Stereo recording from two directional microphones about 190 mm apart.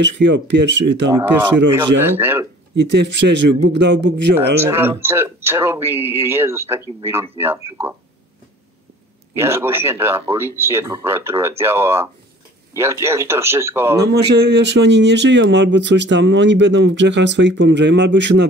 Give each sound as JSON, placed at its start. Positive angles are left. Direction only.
{"t": 0.0, "sound": "speech", "side_deg": -70}
{"t": 1.1, "sound": "speech", "side_deg": -10}
{"t": 2.7, "sound": "a man's voice", "side_deg": -65}
{"t": 4.6, "sound": "speech", "side_deg": -10}
{"t": 9.3, "sound": "speech", "side_deg": -10}
{"t": 14.0, "sound": "speech", "side_deg": -60}